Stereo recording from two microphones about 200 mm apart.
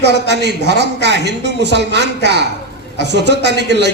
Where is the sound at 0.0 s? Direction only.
60° right (ahead or behind).